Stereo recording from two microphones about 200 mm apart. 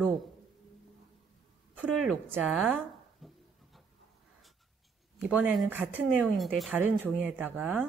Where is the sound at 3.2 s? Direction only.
Centre (ahead or behind).